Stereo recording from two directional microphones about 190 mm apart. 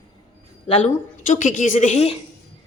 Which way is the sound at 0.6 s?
30° left (ahead or behind).